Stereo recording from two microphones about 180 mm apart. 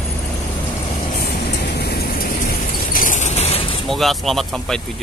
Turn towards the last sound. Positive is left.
turn(degrees=0)  # may be behind; listen again after turning